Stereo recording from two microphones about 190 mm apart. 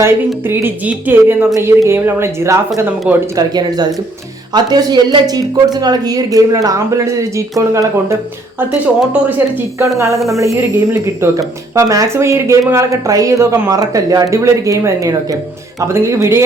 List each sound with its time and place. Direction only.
0.4 s speech: 10° right (ahead or behind)